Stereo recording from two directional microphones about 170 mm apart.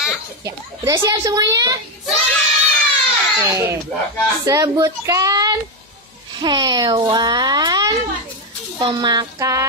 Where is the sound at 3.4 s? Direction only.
15° right (ahead or behind).